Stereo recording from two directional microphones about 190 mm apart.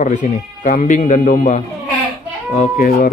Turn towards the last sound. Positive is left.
turn(degrees=50)  # may be behind; listen again after turning